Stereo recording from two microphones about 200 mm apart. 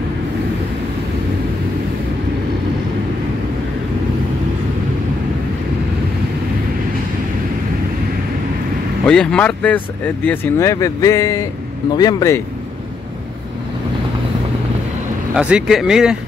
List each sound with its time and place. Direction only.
9.0 s speech: 5° left (ahead or behind)
15.3 s speech: 5° right (ahead or behind)